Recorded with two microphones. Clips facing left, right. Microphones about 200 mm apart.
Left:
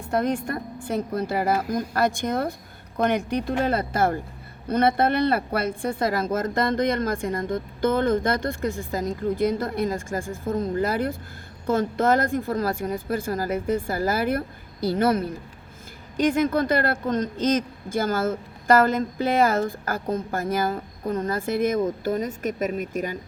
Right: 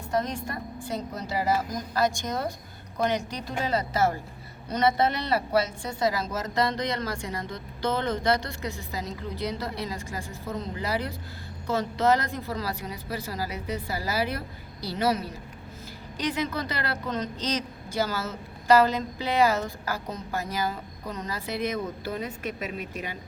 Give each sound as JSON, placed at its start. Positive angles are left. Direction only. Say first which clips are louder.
{"t": 0.1, "sound": "a woman's voice", "louder": "left 5 dB", "side_deg": 55}